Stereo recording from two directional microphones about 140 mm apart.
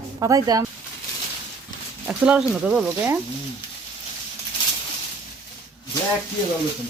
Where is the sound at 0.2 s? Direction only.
25° right (ahead or behind).